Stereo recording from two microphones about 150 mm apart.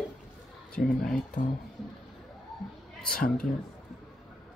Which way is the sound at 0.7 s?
5° left (ahead or behind).